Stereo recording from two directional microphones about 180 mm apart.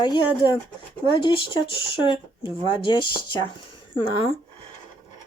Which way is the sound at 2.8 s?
25° left (ahead or behind).